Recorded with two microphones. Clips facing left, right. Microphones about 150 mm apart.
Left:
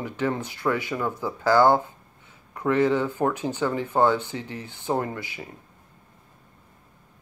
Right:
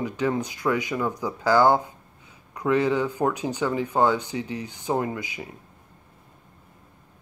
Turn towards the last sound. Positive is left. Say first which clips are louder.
# right 1 dB
turn(degrees=-15)  # may be behind; listen again after turning